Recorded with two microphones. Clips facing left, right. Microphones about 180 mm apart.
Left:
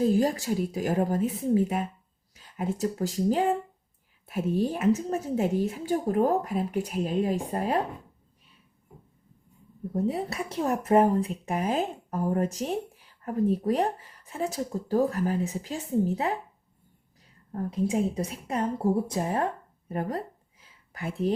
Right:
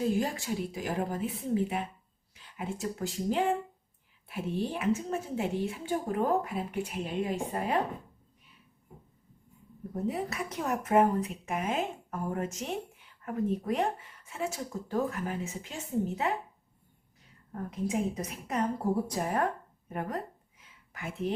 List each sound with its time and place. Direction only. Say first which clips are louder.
0.0 s speech: left 6 dB; 35° left (ahead or behind)
9.9 s speech: left 4 dB; 30° left (ahead or behind)
17.5 s speech: left 5 dB; 30° left (ahead or behind)
19.9 s a sound: left 4 dB; 30° left (ahead or behind)